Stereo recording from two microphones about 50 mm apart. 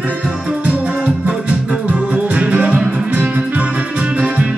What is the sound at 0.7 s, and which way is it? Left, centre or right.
Music, right.